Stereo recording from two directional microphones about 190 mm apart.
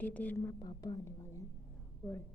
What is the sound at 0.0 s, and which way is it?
A woman's voice, 10° left (ahead or behind).